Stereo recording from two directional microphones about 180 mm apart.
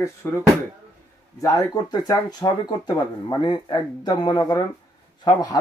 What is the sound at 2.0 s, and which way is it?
Speech, 20° left (ahead or behind).